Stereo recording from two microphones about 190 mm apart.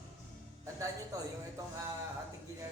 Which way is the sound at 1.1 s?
20° right (ahead or behind).